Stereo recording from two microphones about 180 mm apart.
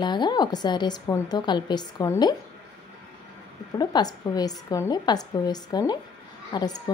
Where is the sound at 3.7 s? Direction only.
20° left (ahead or behind).